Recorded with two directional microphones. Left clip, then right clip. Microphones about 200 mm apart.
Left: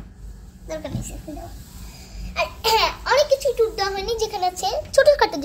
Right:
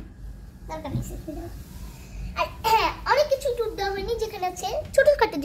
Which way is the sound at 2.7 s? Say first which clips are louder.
Left 2 dB; 15° left (ahead or behind).